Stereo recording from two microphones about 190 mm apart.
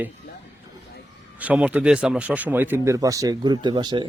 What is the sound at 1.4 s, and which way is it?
Speech, 5° right (ahead or behind).